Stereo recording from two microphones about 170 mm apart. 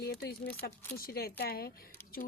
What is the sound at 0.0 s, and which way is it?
A woman's voice, 70° left (ahead or behind).